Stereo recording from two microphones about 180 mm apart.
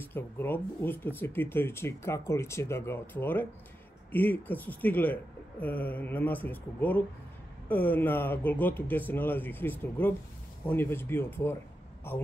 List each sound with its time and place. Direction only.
0.0 s speech: 10° left (ahead or behind)